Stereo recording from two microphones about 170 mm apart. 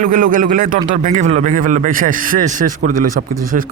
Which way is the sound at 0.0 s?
55° right (ahead or behind).